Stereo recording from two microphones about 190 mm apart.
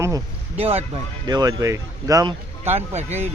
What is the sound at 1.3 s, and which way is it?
Speech, 20° right (ahead or behind).